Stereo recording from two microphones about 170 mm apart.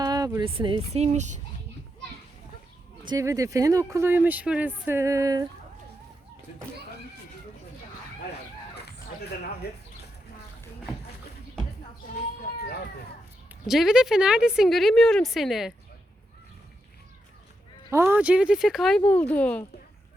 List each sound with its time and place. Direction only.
0.0 s a sound: 20° right (ahead or behind)
0.4 s speech: 30° right (ahead or behind)
3.0 s speech: 25° right (ahead or behind)
9.6 s speech: 70° left (ahead or behind)
13.5 s speech: centre (ahead or behind)
17.9 s speech: 15° right (ahead or behind); by 19.6 s 10° left (ahead or behind)